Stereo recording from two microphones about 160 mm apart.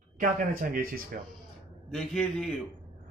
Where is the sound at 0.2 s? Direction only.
60° right (ahead or behind).